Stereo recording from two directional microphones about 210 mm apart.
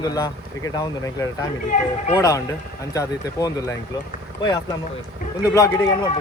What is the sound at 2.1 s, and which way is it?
A man's voice, 15° left (ahead or behind).